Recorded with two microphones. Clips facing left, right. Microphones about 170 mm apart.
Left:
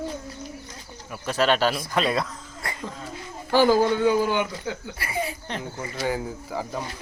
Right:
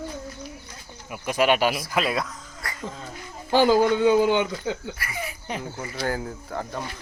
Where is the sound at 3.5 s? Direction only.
20° right (ahead or behind).